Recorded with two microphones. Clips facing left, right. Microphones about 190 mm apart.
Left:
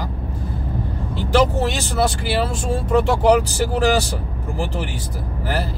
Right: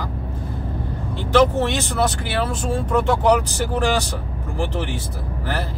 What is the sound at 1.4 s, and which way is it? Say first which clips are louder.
Speech: right 2 dB; 10° left (ahead or behind).